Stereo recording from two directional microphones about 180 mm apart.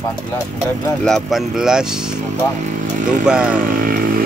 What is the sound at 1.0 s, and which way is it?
Speech, 5° left (ahead or behind).